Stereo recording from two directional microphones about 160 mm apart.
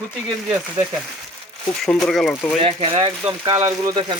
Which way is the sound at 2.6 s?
35° right (ahead or behind).